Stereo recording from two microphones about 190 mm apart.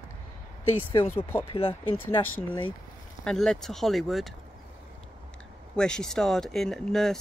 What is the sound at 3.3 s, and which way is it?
Speech, centre (ahead or behind).